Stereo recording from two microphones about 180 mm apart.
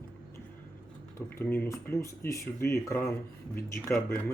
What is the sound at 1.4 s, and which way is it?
Speech, 10° left (ahead or behind).